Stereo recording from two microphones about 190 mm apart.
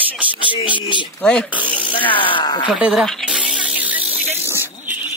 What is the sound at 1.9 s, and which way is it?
Speech, 25° left (ahead or behind).